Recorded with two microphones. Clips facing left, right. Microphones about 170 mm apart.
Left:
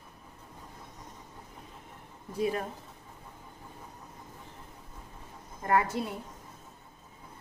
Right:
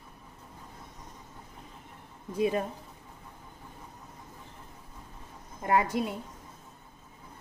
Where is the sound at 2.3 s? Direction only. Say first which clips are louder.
Right 3 dB; 20° right (ahead or behind).